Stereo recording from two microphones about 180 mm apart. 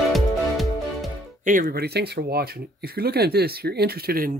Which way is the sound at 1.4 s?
50° right (ahead or behind).